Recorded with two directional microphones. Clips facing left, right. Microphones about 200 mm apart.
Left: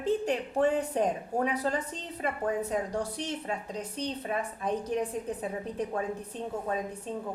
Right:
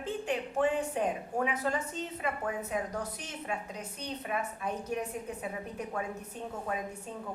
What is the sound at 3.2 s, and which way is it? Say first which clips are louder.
Speech: left 4 dB; 35° left (ahead or behind).